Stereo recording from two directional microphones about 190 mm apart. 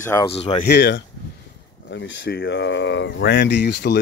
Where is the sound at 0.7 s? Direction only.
65° left (ahead or behind).